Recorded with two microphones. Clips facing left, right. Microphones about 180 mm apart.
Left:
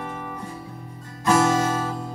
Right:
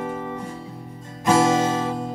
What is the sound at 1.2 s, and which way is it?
Music, 20° right (ahead or behind).